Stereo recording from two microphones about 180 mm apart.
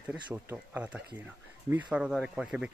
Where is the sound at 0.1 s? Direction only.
5° right (ahead or behind).